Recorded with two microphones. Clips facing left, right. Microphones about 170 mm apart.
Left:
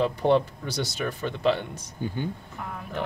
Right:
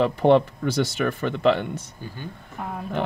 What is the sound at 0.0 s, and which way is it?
Speech, 65° right (ahead or behind).